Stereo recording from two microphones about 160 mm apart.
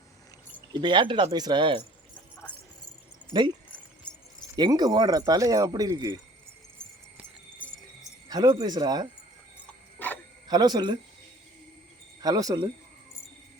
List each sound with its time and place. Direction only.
0.7 s speech: 30° right (ahead or behind)
2.1 s jingle bell: 10° left (ahead or behind)
4.1 s keys jangling: 5° left (ahead or behind)
4.5 s speech: 25° right (ahead or behind)
7.6 s jingle bell: 10° left (ahead or behind)
8.3 s speech: 25° right (ahead or behind)
10.0 s wild animals: 10° left (ahead or behind)
10.5 s speech: 25° right (ahead or behind)
12.2 s speech: 20° right (ahead or behind)